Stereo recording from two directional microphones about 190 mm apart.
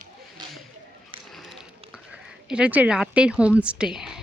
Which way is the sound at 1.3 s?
Centre (ahead or behind).